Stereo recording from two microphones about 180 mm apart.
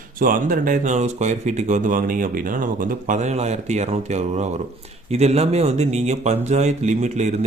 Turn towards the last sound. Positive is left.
turn(degrees=-40)  # may be behind; listen again after turning